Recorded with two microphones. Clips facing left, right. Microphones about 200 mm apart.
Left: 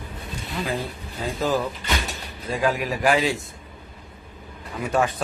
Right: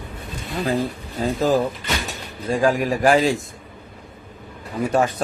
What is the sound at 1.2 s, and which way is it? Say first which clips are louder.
Speech: right 5 dB; 45° right (ahead or behind).